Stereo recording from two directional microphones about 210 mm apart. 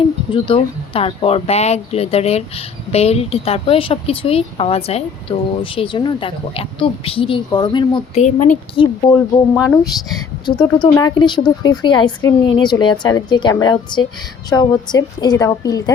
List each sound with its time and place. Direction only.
0.3 s speech: 25° left (ahead or behind)